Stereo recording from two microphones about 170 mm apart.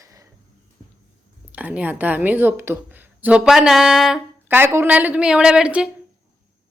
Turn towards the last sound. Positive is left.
turn(degrees=-5)  # may be behind; listen again after turning